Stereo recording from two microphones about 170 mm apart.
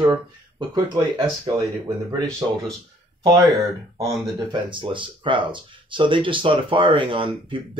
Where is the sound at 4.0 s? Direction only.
20° right (ahead or behind).